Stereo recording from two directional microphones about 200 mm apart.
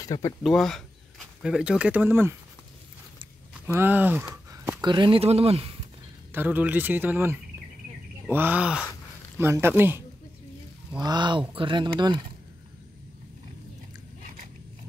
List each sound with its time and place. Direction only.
0.0 s speech: 15° left (ahead or behind)
0.4 s speech: centre (ahead or behind)
3.6 s speech: 10° right (ahead or behind); by 5.8 s 30° right (ahead or behind)
6.3 s speech: 10° right (ahead or behind)
11.0 s speech: 20° right (ahead or behind)